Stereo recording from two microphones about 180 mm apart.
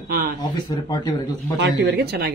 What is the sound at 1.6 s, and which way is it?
Speech, 70° right (ahead or behind).